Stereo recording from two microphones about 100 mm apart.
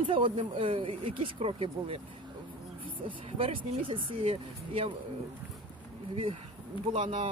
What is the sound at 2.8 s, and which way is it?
Speech, 60° right (ahead or behind).